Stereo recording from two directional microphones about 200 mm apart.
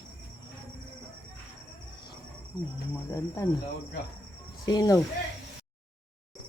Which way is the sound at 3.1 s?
15° left (ahead or behind).